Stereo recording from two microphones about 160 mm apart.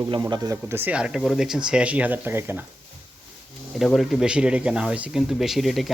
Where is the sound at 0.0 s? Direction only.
25° right (ahead or behind).